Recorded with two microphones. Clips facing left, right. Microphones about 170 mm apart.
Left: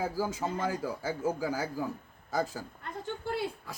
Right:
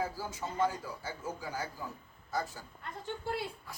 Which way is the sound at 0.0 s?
90° left.